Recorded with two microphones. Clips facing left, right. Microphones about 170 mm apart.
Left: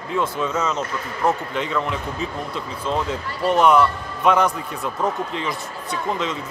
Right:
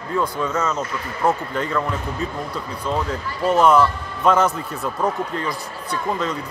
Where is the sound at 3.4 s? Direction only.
15° left (ahead or behind).